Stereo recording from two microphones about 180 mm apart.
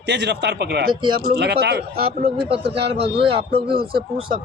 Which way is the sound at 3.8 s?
55° right (ahead or behind).